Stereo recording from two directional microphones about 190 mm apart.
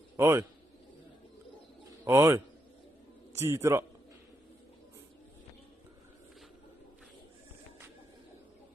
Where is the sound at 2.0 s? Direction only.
15° right (ahead or behind).